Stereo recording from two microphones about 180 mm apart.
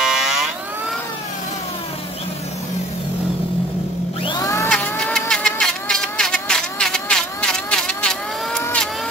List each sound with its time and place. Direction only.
0.0 s fire alarm: centre (ahead or behind)
4.2 s vehicle: 25° left (ahead or behind)
4.6 s vehicle: 5° left (ahead or behind)